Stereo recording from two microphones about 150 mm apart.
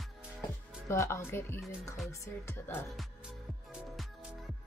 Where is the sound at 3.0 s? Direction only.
5° right (ahead or behind).